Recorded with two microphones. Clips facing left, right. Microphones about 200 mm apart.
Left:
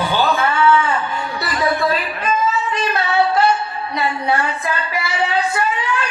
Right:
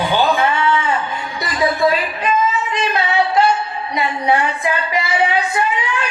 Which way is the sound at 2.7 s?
15° right (ahead or behind).